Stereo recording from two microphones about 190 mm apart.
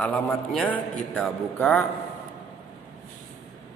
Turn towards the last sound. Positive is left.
turn(degrees=5)  # may be behind; listen again after turning